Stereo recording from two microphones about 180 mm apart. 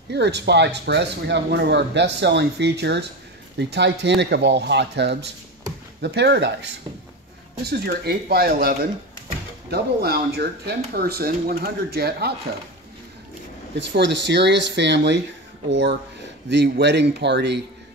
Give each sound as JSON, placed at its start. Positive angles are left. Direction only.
{"t": 0.1, "sound": "speech", "side_deg": -70}
{"t": 13.7, "sound": "speech", "side_deg": -80}